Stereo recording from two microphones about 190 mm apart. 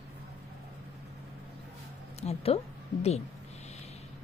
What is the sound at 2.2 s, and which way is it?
Speech, 30° left (ahead or behind).